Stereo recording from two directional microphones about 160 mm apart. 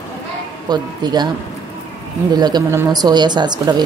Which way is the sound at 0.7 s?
25° right (ahead or behind).